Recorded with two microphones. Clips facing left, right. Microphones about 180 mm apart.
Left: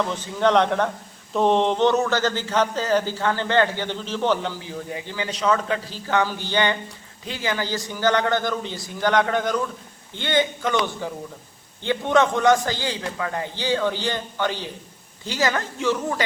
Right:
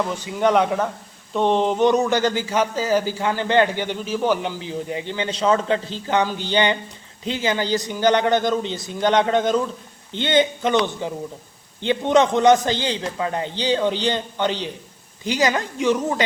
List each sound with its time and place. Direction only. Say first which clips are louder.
0.0 s a man's voice: right 1 dB; 10° right (ahead or behind)